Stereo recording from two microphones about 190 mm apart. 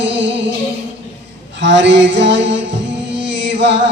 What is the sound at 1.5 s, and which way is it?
Music, 70° right (ahead or behind).